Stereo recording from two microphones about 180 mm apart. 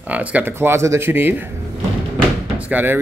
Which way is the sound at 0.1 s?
10° right (ahead or behind).